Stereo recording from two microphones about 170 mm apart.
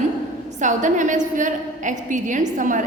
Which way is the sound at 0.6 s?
50° right (ahead or behind).